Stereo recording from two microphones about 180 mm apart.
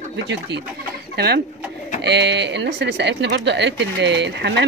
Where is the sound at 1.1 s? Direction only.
60° right (ahead or behind).